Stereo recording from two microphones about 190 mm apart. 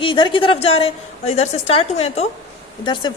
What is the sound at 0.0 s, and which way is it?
A woman's voice, 25° left (ahead or behind).